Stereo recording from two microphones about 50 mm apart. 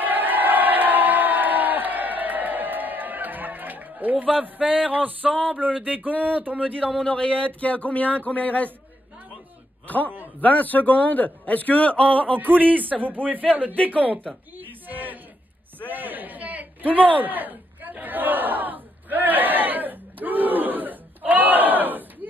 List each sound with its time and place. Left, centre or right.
0.0 s crowd: right
4.4 s a sound: right
4.8 s a man's voice: right
6.8 s speech: centre
7.1 s speech: left
9.8 s a sound: left
10.4 s a man's voice: left
12.4 s a man's voice: right
14.7 s a sound: right
18.0 s battle cry: right